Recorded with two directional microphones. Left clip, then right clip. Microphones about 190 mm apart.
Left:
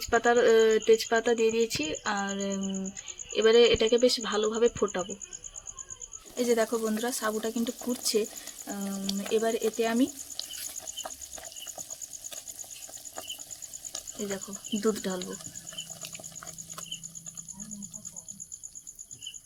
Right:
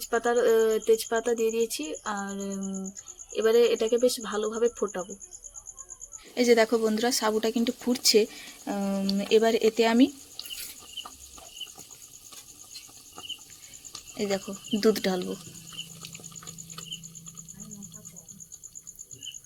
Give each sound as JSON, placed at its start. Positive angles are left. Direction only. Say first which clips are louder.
{"t": 0.0, "sound": "speech", "louder": "left 1 dB", "side_deg": 0}
{"t": 6.3, "sound": "speech", "louder": "right 5 dB", "side_deg": -25}
{"t": 14.2, "sound": "speech", "louder": "right 8 dB", "side_deg": -20}